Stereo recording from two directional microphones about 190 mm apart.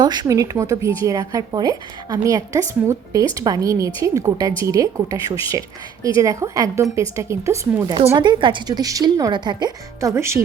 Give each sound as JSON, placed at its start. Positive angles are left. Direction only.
{"t": 0.0, "sound": "a woman's voice", "side_deg": -20}